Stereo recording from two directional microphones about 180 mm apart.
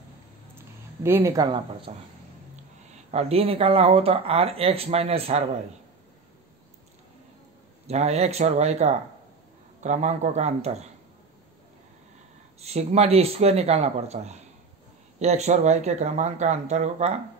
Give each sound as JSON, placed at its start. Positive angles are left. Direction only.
{"t": 1.0, "sound": "speech", "side_deg": -15}
{"t": 2.5, "sound": "speech", "side_deg": -40}
{"t": 7.8, "sound": "speech", "side_deg": -35}
{"t": 12.5, "sound": "speech", "side_deg": -35}